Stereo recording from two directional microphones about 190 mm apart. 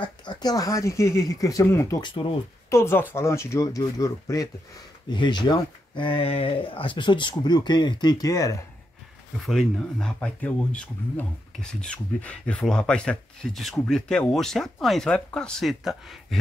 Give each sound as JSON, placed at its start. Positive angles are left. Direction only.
{"t": 0.0, "sound": "speech", "side_deg": 25}
{"t": 2.7, "sound": "speech", "side_deg": 15}
{"t": 9.5, "sound": "speech", "side_deg": 0}